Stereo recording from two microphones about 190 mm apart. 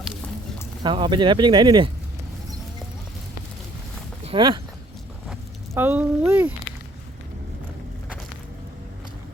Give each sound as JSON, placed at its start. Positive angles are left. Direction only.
{"t": 0.8, "sound": "speech", "side_deg": -25}
{"t": 4.2, "sound": "speech", "side_deg": -30}
{"t": 5.3, "sound": "speech", "side_deg": -10}